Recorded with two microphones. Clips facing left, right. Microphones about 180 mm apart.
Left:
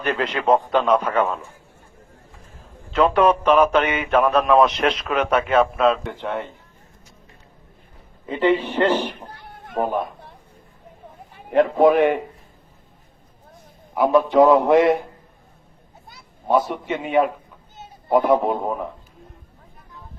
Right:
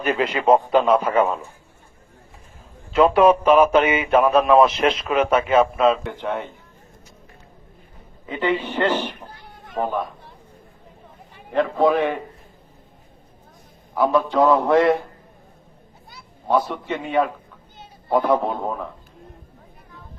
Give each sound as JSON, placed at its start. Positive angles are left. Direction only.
{"t": 0.0, "sound": "speech", "side_deg": -5}
{"t": 2.9, "sound": "speech", "side_deg": -5}
{"t": 8.3, "sound": "a man's voice", "side_deg": 0}
{"t": 9.3, "sound": "a sound", "side_deg": 55}
{"t": 11.8, "sound": "a man's voice", "side_deg": 15}
{"t": 13.9, "sound": "a man's voice", "side_deg": 15}
{"t": 16.7, "sound": "a man's voice", "side_deg": 10}